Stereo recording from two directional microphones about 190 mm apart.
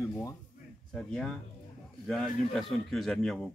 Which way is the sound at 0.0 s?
15° left (ahead or behind).